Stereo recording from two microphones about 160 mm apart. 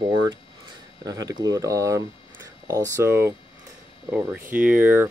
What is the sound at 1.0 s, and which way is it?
Speech, 20° right (ahead or behind).